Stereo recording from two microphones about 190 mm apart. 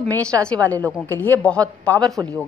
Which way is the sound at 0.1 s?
5° left (ahead or behind).